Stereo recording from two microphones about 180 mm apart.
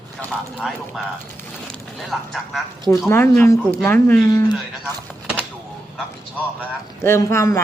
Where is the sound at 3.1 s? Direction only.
15° left (ahead or behind).